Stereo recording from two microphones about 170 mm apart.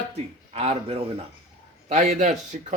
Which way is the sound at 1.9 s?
45° right (ahead or behind).